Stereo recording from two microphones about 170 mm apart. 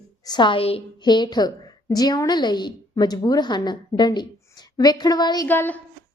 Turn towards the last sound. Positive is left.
turn(degrees=10)  # may be behind; listen again after turning